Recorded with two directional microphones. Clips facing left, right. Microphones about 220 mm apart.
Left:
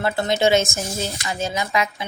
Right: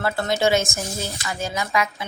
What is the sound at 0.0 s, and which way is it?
Speech, 20° left (ahead or behind).